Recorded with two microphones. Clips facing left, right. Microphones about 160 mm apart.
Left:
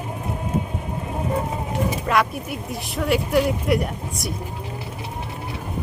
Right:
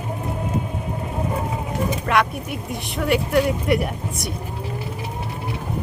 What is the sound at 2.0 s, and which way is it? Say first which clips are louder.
Speech: right 2 dB; centre (ahead or behind).